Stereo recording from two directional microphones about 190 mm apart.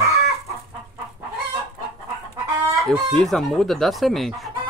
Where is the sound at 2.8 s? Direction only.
Centre (ahead or behind).